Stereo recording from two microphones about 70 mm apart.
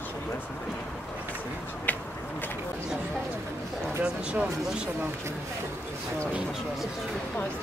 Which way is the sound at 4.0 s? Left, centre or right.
Centre.